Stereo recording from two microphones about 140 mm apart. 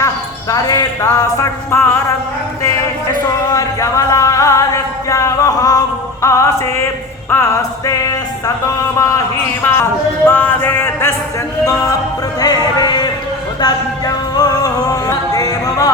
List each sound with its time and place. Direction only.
0.5 s speech: 25° left (ahead or behind)
3.5 s music: 25° left (ahead or behind)
9.7 s a sound: 15° left (ahead or behind)
11.6 s music: 25° left (ahead or behind)